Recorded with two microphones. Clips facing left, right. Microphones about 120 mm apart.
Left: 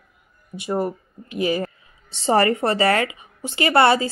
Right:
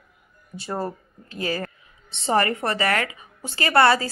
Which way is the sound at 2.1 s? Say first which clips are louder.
Left 4 dB; 30° left (ahead or behind).